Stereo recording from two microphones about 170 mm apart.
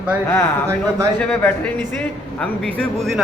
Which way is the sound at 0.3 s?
15° left (ahead or behind).